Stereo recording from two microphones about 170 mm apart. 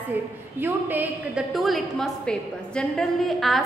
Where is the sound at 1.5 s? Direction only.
Centre (ahead or behind).